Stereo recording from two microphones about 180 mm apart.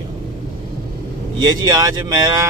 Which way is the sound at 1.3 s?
20° right (ahead or behind).